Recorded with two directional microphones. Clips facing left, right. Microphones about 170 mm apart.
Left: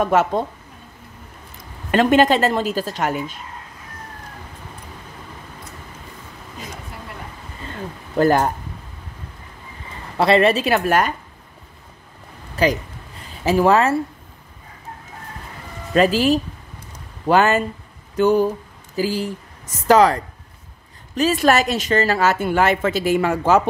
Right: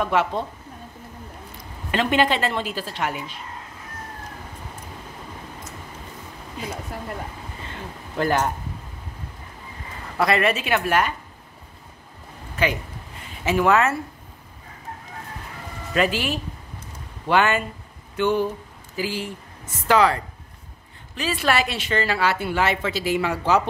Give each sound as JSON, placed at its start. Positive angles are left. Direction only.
{"t": 0.0, "sound": "a woman's voice", "side_deg": 45}
{"t": 1.9, "sound": "a woman's voice", "side_deg": 45}
{"t": 8.2, "sound": "a woman's voice", "side_deg": 40}
{"t": 10.1, "sound": "a woman's voice", "side_deg": 30}
{"t": 12.6, "sound": "a woman's voice", "side_deg": 35}
{"t": 15.9, "sound": "a woman's voice", "side_deg": 35}